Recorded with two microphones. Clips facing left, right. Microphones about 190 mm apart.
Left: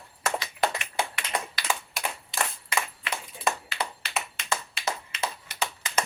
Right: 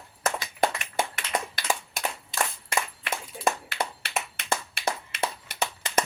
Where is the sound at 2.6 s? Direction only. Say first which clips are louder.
Right 1 dB; 50° right (ahead or behind).